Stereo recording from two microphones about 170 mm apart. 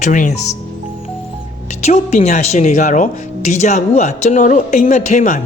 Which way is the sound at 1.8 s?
40° left (ahead or behind).